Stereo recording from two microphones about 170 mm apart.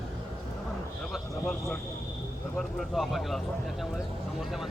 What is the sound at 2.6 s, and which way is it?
Speech, centre (ahead or behind).